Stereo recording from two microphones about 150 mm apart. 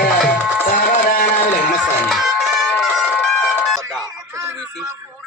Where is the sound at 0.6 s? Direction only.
65° left (ahead or behind).